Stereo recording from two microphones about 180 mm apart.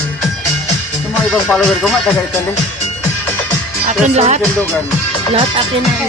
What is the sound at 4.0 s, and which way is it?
Speech, 40° right (ahead or behind).